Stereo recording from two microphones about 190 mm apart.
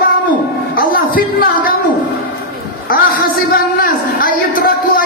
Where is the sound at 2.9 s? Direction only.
50° left (ahead or behind).